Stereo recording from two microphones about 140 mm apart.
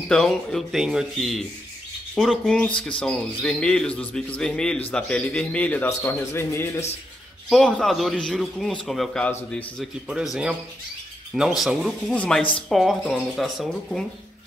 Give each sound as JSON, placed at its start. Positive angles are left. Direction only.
{"t": 0.1, "sound": "a man's voice", "side_deg": 5}
{"t": 7.4, "sound": "a man's voice", "side_deg": 0}
{"t": 10.0, "sound": "speech", "side_deg": -5}
{"t": 12.1, "sound": "a man's voice", "side_deg": 10}